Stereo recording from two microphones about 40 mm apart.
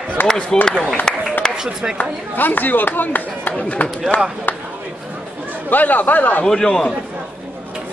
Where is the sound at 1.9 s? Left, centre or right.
Left.